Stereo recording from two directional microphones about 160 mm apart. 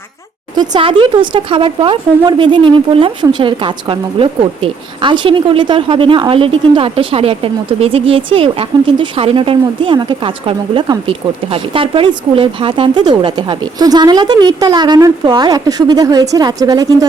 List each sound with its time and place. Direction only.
0.5 s speech: 25° right (ahead or behind)